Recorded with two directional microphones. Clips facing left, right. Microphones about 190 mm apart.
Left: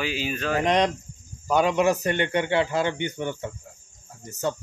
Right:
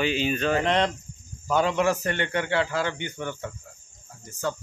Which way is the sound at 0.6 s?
15° left (ahead or behind).